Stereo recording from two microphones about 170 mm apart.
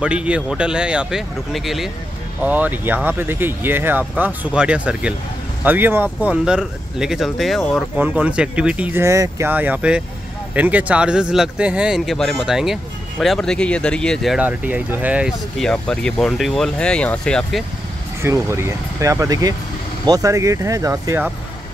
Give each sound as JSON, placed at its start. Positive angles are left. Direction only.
{"t": 0.0, "sound": "speech", "side_deg": -5}
{"t": 18.2, "sound": "speech", "side_deg": -15}